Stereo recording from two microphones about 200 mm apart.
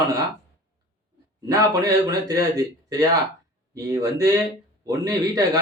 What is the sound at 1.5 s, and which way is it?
Speech, 15° right (ahead or behind).